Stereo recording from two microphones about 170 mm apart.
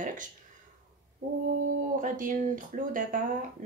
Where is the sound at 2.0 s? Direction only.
50° right (ahead or behind).